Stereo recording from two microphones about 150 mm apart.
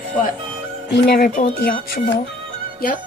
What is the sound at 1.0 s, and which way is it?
Speech, 90° left.